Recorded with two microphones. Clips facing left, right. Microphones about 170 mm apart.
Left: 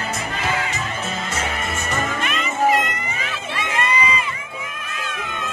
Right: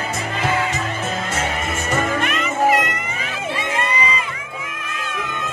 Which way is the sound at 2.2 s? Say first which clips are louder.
Right 1 dB; 55° right (ahead or behind).